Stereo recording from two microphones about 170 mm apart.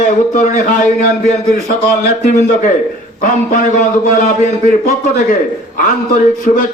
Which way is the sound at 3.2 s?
50° left (ahead or behind).